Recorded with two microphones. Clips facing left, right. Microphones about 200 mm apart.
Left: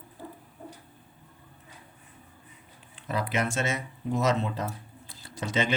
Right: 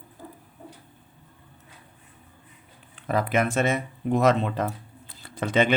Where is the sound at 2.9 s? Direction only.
55° right (ahead or behind).